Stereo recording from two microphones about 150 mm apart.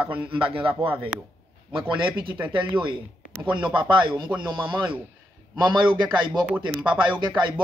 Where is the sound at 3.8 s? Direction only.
30° right (ahead or behind).